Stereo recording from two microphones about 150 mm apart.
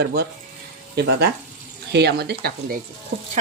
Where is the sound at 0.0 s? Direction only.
90° right.